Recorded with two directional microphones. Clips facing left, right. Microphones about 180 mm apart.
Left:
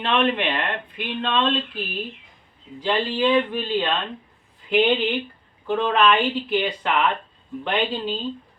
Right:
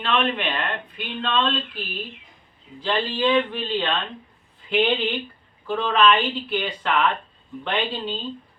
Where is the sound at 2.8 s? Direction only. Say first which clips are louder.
Left 1 dB; 10° left (ahead or behind).